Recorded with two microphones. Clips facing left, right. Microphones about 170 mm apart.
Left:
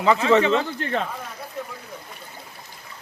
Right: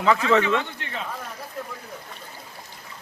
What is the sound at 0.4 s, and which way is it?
Speech, 35° left (ahead or behind).